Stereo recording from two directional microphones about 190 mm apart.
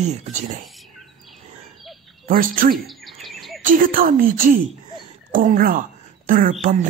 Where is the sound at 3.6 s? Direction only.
45° right (ahead or behind).